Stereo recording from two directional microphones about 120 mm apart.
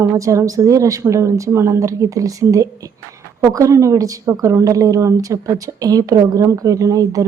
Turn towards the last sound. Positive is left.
turn(degrees=-30)  # may be behind; listen again after turning